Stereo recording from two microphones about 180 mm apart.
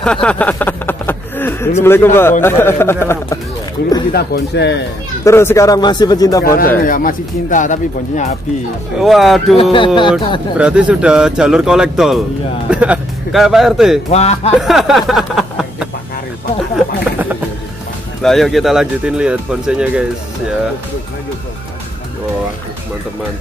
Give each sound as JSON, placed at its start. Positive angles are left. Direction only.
{"t": 0.0, "sound": "a sound", "side_deg": 5}
{"t": 1.8, "sound": "a man's voice", "side_deg": 15}
{"t": 4.1, "sound": "speech", "side_deg": 65}
{"t": 5.2, "sound": "speech", "side_deg": 15}
{"t": 6.4, "sound": "speech", "side_deg": 55}
{"t": 9.0, "sound": "speech", "side_deg": 0}
{"t": 9.6, "sound": "speech", "side_deg": 30}
{"t": 10.6, "sound": "speech", "side_deg": -5}
{"t": 14.1, "sound": "speech", "side_deg": 35}
{"t": 14.5, "sound": "speech", "side_deg": 0}
{"t": 16.7, "sound": "a sound", "side_deg": -10}
{"t": 18.2, "sound": "speech", "side_deg": 0}